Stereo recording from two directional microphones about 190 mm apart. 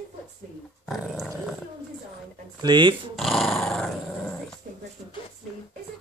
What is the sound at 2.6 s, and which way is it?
Speech, 25° right (ahead or behind).